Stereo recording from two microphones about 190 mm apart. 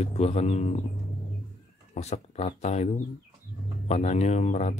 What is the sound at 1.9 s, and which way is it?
Speech, 35° left (ahead or behind).